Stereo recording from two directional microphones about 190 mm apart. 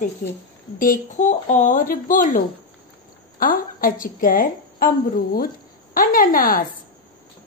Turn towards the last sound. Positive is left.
turn(degrees=50)  # may be behind; listen again after turning